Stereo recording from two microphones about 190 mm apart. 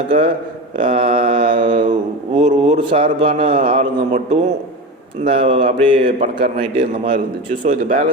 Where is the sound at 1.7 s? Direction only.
40° right (ahead or behind).